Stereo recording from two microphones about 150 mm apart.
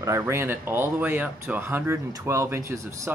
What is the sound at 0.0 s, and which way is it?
Speech, 20° right (ahead or behind).